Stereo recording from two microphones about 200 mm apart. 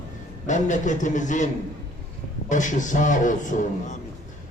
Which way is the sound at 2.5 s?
40° left (ahead or behind).